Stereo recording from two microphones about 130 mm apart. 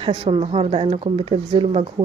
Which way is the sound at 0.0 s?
45° right (ahead or behind).